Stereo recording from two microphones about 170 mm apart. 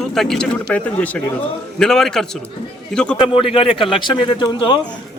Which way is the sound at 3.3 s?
30° left (ahead or behind).